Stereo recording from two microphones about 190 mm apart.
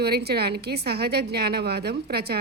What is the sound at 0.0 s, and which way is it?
A woman's voice, 55° right (ahead or behind).